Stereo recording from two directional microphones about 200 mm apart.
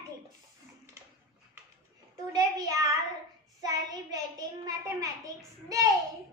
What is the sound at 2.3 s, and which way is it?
Child singing, 15° right (ahead or behind).